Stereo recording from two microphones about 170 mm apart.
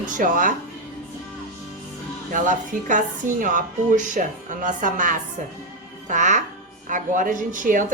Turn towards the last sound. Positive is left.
turn(degrees=-50)  # may be behind; listen again after turning